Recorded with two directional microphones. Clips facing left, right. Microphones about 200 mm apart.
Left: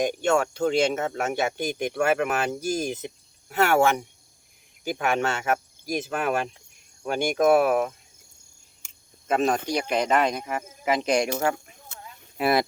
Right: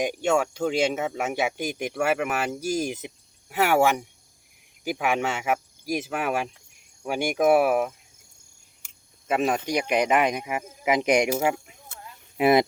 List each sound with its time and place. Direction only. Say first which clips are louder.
0.0 s speech: left 1 dB; 10° right (ahead or behind)
8.8 s a sound: left 3 dB; 5° right (ahead or behind)
9.9 s speech: right 1 dB; 15° right (ahead or behind)